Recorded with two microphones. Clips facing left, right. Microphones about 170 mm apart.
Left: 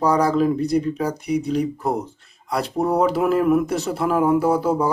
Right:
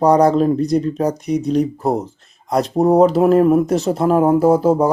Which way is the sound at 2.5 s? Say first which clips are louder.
Right 7 dB; 40° right (ahead or behind).